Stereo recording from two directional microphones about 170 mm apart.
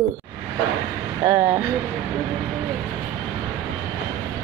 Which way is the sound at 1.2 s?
15° right (ahead or behind).